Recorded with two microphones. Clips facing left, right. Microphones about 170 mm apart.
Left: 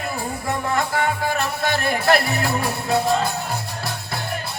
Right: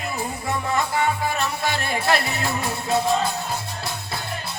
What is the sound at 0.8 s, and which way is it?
Music, 55° left (ahead or behind).